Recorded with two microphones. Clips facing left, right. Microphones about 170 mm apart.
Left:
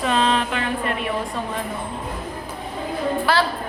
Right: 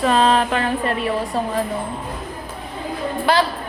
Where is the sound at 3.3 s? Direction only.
20° right (ahead or behind).